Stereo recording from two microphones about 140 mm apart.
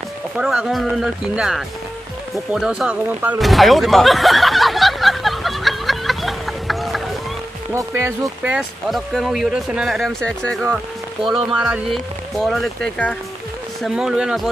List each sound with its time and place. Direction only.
0.4 s speech: 5° right (ahead or behind)
3.3 s a sound: centre (ahead or behind)
7.7 s speech: 20° right (ahead or behind)
8.5 s speech: 5° right (ahead or behind)
13.8 s speech: 5° right (ahead or behind)